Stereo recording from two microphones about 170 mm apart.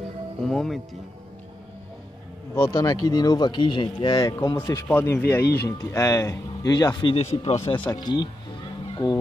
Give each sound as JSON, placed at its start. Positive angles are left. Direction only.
{"t": 0.5, "sound": "speech", "side_deg": 0}
{"t": 2.5, "sound": "speech", "side_deg": 20}
{"t": 7.9, "sound": "speech", "side_deg": 25}
{"t": 8.9, "sound": "music", "side_deg": 25}